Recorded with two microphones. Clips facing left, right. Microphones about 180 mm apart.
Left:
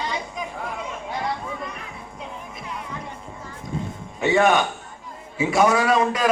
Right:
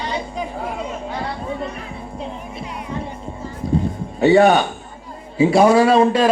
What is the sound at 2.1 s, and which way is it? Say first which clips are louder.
Music: right 7 dB; 30° right (ahead or behind).